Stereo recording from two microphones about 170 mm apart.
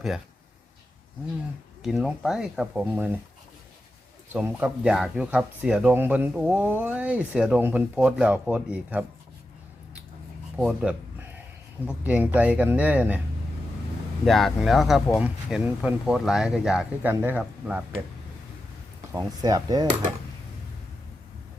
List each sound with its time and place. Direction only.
1.8 s speech: 5° right (ahead or behind)
4.3 s speech: 5° right (ahead or behind)
10.6 s speech: 5° right (ahead or behind)
12.0 s speech: 10° right (ahead or behind)
14.3 s speech: centre (ahead or behind)
19.1 s speech: 25° right (ahead or behind)